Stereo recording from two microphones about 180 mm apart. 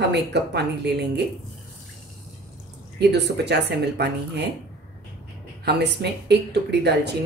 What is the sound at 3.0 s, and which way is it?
Speech, 70° right (ahead or behind).